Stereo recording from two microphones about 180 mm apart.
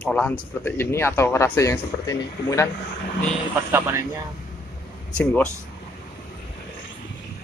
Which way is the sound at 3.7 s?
15° right (ahead or behind).